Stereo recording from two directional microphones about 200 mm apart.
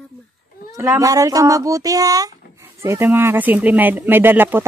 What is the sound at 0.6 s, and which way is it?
Speech, 15° right (ahead or behind).